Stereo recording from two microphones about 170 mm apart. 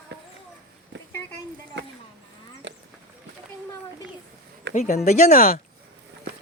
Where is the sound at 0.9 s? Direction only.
90° right.